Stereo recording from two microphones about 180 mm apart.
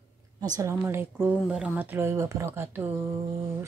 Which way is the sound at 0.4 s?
20° right (ahead or behind).